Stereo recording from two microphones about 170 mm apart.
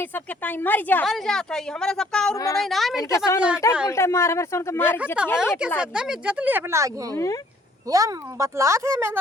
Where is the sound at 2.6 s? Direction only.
Centre (ahead or behind).